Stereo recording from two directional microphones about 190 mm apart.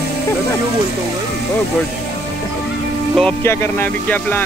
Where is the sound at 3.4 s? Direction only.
10° left (ahead or behind).